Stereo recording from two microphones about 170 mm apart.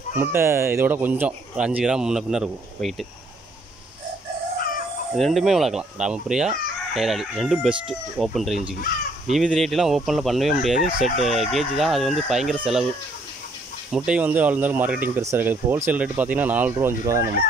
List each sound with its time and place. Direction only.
0.2 s speech: 15° right (ahead or behind)
5.1 s speech: centre (ahead or behind)
13.9 s speech: 5° right (ahead or behind)